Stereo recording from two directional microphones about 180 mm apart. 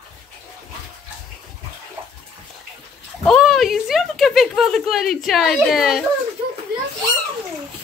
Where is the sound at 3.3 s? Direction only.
Centre (ahead or behind).